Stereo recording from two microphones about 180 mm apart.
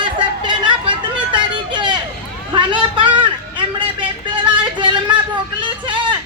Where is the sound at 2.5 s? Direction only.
25° right (ahead or behind).